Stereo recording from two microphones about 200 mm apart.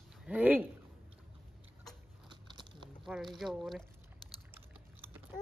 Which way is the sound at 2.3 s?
25° right (ahead or behind).